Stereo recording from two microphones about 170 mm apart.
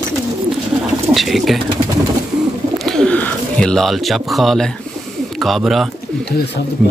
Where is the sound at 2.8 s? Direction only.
5° left (ahead or behind).